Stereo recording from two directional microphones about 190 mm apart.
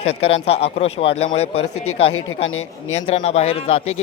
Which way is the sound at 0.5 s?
30° left (ahead or behind).